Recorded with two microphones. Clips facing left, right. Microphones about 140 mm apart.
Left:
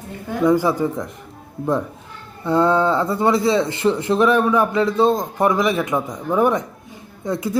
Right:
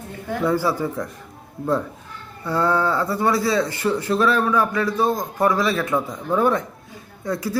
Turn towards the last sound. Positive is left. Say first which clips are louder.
# left 2 dB
turn(degrees=20)  # may be behind; listen again after turning